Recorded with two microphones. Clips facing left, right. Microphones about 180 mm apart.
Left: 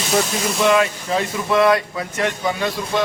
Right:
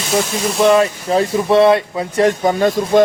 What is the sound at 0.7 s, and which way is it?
Speech, 35° right (ahead or behind).